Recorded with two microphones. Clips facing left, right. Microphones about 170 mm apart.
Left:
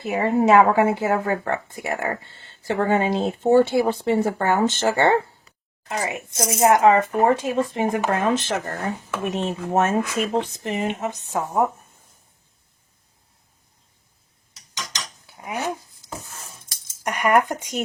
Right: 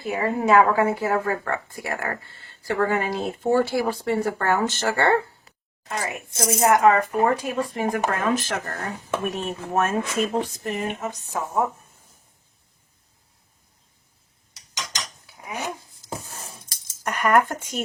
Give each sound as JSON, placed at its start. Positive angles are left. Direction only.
{"t": 0.0, "sound": "speech", "side_deg": 25}
{"t": 15.4, "sound": "speech", "side_deg": 15}
{"t": 17.0, "sound": "speech", "side_deg": 15}